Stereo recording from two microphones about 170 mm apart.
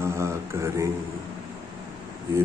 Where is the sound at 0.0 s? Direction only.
15° right (ahead or behind).